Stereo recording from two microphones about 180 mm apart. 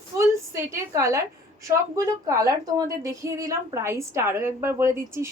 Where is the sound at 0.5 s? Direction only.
15° right (ahead or behind).